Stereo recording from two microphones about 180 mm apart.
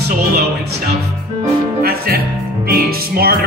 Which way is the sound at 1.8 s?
55° right (ahead or behind).